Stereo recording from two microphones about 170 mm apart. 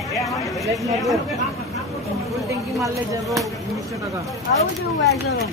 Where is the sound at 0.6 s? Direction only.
20° right (ahead or behind).